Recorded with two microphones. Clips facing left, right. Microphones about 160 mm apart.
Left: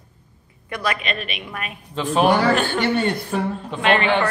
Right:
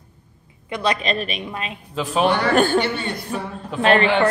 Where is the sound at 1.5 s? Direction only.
25° right (ahead or behind).